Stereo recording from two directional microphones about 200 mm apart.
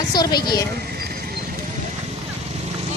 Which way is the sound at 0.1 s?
20° left (ahead or behind).